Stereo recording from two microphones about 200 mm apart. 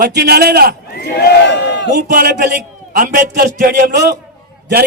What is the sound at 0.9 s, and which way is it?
Speech, 50° left (ahead or behind).